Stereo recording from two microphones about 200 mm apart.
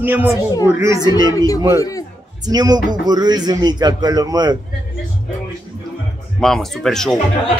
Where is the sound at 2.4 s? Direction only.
20° right (ahead or behind).